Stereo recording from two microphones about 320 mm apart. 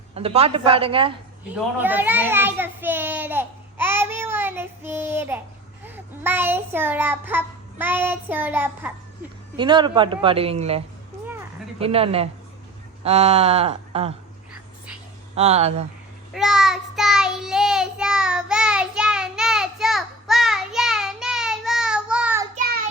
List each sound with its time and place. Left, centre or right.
0.1 s child singing: centre
1.8 s a child's voice: centre
5.8 s child singing: centre
13.1 s speech: centre
15.4 s speech: centre
16.3 s child singing: centre
22.5 s child singing: right